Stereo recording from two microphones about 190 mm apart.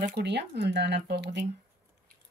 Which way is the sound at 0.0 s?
60° right (ahead or behind).